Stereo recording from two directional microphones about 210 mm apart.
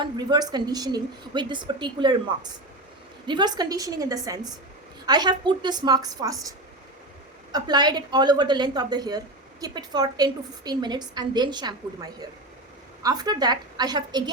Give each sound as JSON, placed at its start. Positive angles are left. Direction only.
{"t": 0.0, "sound": "a woman's voice", "side_deg": -20}
{"t": 7.5, "sound": "a woman's voice", "side_deg": -20}